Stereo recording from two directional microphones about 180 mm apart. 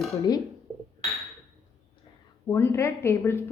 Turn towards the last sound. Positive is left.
turn(degrees=15)  # may be behind; listen again after turning